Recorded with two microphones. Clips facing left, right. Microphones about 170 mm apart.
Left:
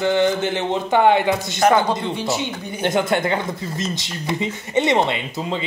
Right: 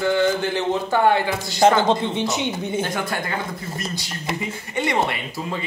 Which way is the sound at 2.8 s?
25° left (ahead or behind).